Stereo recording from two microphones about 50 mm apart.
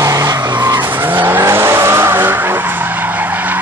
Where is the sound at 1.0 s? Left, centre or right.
Right.